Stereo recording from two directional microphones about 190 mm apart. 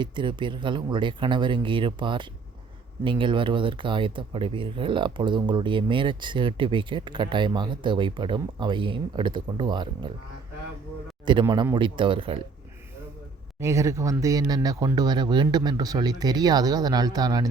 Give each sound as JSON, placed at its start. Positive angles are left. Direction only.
{"t": 0.0, "sound": "speech", "side_deg": -25}
{"t": 11.3, "sound": "speech", "side_deg": -25}
{"t": 13.6, "sound": "speech", "side_deg": -15}